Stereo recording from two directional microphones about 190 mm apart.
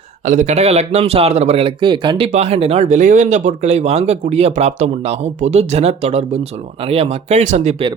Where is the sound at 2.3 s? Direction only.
35° right (ahead or behind).